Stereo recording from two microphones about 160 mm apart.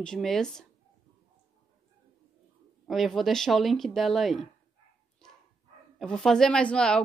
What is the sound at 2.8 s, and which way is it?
Speech, centre (ahead or behind).